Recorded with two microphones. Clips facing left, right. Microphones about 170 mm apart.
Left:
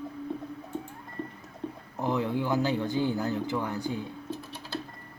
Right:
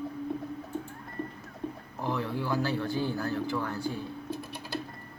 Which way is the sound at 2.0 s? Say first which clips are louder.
Left 4 dB; 20° left (ahead or behind).